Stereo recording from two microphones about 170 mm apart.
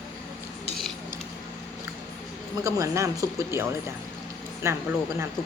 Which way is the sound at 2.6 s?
15° right (ahead or behind).